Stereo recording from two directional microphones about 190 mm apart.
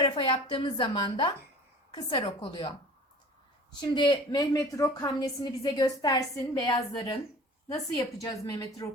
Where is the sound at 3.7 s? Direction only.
20° left (ahead or behind).